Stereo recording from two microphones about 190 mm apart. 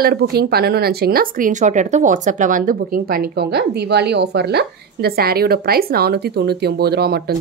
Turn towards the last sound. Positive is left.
turn(degrees=-55)  # may be behind; listen again after turning